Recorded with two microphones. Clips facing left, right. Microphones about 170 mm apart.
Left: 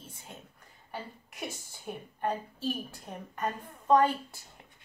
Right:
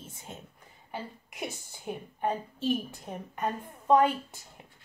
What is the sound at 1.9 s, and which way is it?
A woman's voice, 10° right (ahead or behind).